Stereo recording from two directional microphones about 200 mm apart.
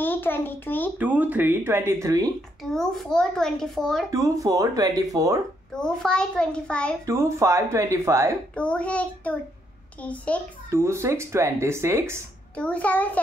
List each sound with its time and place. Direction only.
0.0 s a child's voice: 10° left (ahead or behind)
0.9 s speech: 10° right (ahead or behind)
2.7 s a child's voice: centre (ahead or behind)
4.1 s speech: 15° right (ahead or behind)
5.8 s a child's voice: 5° left (ahead or behind)
7.1 s speech: 15° right (ahead or behind)
8.5 s a child's voice: 5° left (ahead or behind)
10.7 s speech: 15° right (ahead or behind)
12.5 s a child's voice: 5° left (ahead or behind)